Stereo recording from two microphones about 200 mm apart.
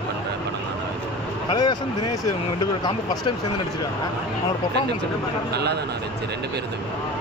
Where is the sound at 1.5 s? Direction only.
20° left (ahead or behind).